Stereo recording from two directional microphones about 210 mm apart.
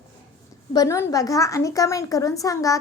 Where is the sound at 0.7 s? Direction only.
15° left (ahead or behind).